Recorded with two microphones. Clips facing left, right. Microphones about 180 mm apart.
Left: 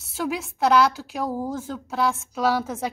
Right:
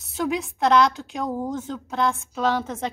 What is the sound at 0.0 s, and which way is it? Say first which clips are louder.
A woman's voice: right 2 dB; 5° left (ahead or behind).